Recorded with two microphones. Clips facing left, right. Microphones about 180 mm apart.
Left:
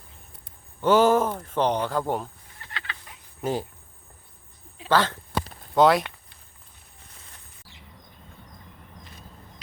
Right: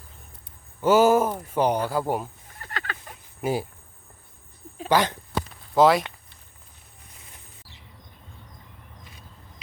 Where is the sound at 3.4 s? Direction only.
10° right (ahead or behind).